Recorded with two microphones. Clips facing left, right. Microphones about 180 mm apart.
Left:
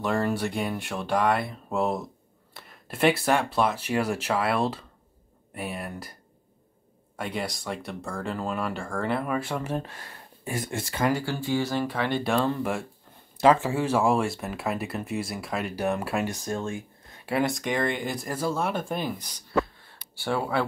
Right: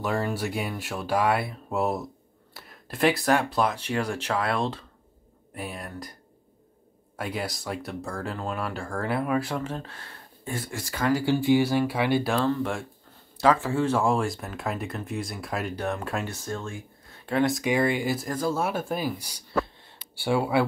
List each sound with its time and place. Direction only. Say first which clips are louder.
0.0 s speech: left 2 dB; 5° right (ahead or behind)
7.2 s speech: even; centre (ahead or behind)
9.6 s speech: left 2 dB; 15° left (ahead or behind)
10.7 s speech: even; 25° left (ahead or behind)
11.2 s speech: right 6 dB; 15° right (ahead or behind)
12.4 s speech: even; 5° left (ahead or behind)
13.4 s speech: left 1 dB; 15° left (ahead or behind)
17.3 s speech: right 2 dB; centre (ahead or behind)